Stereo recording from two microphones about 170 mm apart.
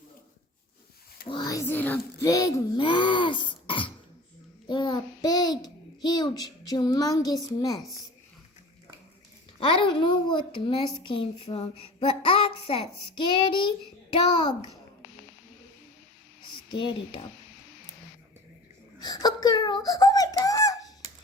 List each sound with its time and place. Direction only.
1.3 s a child's voice: 25° left (ahead or behind)
9.6 s a child's voice: 30° left (ahead or behind)
16.6 s speech: 30° left (ahead or behind)
18.9 s a child's voice: 25° left (ahead or behind)